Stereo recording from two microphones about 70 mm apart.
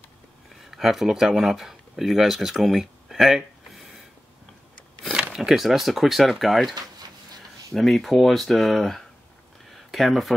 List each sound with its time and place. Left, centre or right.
0.6 s speech: centre
5.3 s speech: centre
6.7 s a sound: right
7.7 s speech: centre